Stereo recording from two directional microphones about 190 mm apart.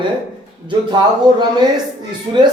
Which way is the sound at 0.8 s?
20° right (ahead or behind).